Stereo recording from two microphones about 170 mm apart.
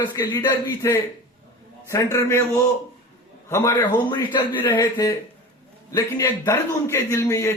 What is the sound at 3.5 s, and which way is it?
A man's voice, 15° left (ahead or behind).